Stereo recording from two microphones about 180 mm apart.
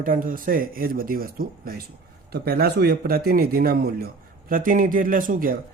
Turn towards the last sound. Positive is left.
turn(degrees=-50)  # may be behind; listen again after turning